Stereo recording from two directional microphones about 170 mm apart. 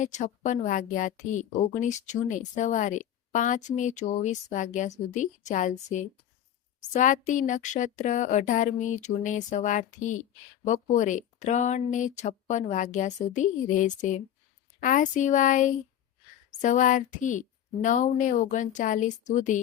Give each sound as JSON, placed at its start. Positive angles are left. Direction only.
{"t": 0.0, "sound": "a woman's voice", "side_deg": 45}